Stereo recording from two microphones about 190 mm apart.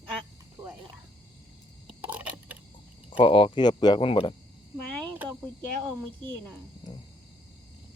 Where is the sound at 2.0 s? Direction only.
10° right (ahead or behind).